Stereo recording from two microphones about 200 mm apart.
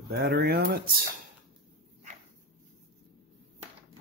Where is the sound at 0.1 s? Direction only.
55° right (ahead or behind).